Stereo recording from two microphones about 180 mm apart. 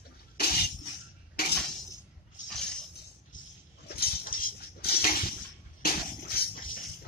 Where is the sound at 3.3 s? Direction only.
45° left (ahead or behind).